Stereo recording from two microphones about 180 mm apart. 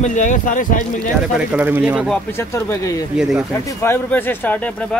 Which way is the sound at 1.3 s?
10° right (ahead or behind).